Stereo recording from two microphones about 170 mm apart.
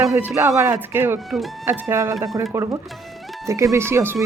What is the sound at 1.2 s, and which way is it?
Speech, centre (ahead or behind).